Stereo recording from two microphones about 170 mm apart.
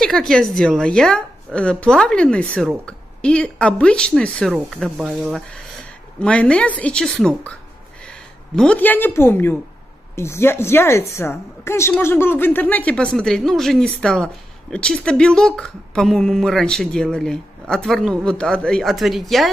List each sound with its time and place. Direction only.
0.0 s a woman's voice: centre (ahead or behind)